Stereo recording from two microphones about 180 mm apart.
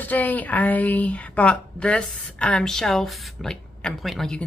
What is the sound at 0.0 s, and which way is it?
A woman's voice, 10° left (ahead or behind).